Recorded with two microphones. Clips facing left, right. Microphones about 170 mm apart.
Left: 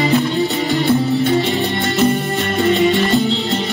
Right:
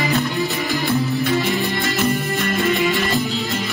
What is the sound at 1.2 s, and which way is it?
Music, 30° left (ahead or behind).